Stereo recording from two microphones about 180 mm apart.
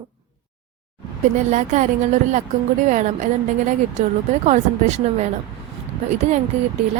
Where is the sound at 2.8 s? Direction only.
40° right (ahead or behind).